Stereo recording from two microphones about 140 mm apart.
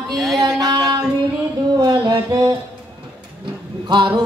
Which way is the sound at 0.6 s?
25° right (ahead or behind).